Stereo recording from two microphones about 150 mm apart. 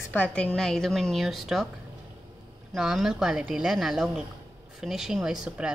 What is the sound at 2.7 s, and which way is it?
A woman's voice, 5° right (ahead or behind).